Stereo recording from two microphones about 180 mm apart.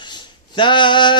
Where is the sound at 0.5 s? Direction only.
25° left (ahead or behind).